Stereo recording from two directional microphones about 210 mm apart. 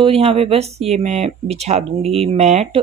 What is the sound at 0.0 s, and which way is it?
Speech, 25° right (ahead or behind).